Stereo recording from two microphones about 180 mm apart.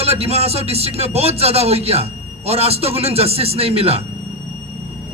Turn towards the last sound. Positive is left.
turn(degrees=-35)  # may be behind; listen again after turning